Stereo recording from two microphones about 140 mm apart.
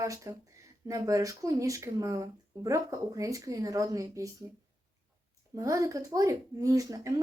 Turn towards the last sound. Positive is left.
turn(degrees=-25)  # may be behind; listen again after turning